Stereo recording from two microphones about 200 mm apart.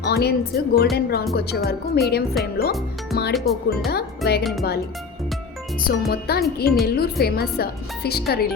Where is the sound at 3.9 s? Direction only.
50° left (ahead or behind).